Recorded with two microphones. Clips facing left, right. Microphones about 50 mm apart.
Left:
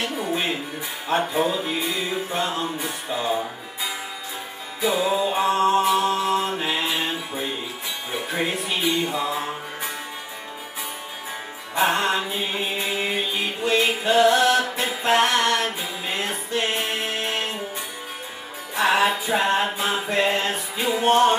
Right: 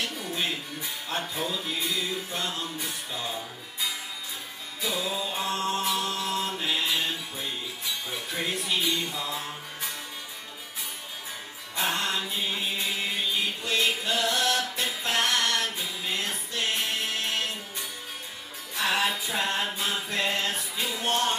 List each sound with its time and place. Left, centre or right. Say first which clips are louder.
0.0 s music: left 6 dB; left
11.7 s music: left 8 dB; left
18.8 s music: left 7 dB; left